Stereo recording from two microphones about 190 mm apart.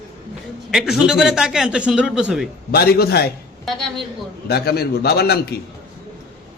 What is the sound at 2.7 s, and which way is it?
Speech, 55° left (ahead or behind).